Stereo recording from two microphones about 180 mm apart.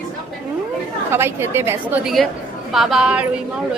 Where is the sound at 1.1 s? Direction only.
15° right (ahead or behind).